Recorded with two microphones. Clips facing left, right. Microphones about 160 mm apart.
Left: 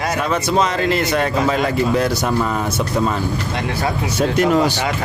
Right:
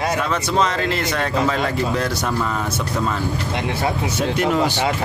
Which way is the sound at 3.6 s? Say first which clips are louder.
Even; 20° right (ahead or behind).